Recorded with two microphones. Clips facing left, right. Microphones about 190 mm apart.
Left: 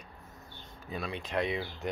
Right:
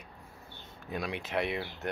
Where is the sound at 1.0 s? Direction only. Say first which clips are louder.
Even; 10° right (ahead or behind).